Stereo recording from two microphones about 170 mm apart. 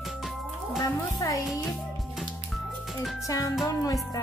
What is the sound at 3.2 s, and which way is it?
Speech, 20° left (ahead or behind).